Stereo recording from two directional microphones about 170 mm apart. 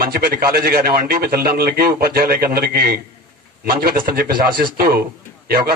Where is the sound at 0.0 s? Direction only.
65° right (ahead or behind).